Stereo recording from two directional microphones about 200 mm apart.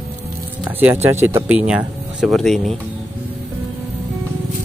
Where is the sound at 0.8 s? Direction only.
10° right (ahead or behind).